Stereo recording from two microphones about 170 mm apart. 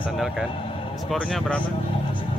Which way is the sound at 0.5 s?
30° left (ahead or behind).